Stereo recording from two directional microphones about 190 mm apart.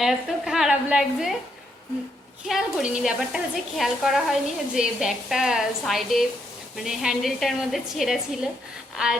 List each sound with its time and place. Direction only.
0.0 s a woman's voice: centre (ahead or behind)
2.5 s a woman's voice: centre (ahead or behind)